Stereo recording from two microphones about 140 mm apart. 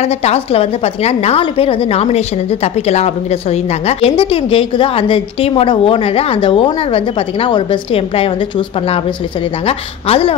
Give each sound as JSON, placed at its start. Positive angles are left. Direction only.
{"t": 0.0, "sound": "a woman's voice", "side_deg": 50}